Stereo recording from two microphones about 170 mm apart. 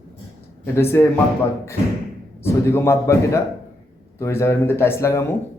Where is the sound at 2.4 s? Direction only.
15° left (ahead or behind).